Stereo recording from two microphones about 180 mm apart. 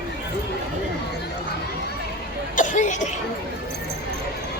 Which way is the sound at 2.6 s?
45° left (ahead or behind).